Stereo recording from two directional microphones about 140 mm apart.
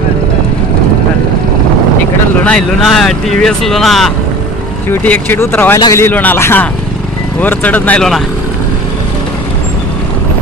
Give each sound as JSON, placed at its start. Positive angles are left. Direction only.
{"t": 2.4, "sound": "speech", "side_deg": 5}
{"t": 4.8, "sound": "a man's voice", "side_deg": 15}